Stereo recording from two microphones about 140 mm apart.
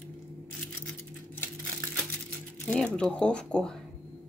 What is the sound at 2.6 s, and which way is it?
Speech, 5° left (ahead or behind).